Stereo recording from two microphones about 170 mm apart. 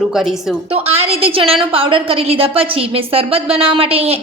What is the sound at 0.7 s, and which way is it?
A woman's voice, 35° right (ahead or behind).